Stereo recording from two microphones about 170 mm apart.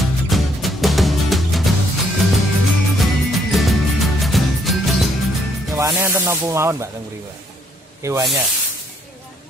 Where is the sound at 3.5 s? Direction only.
Centre (ahead or behind).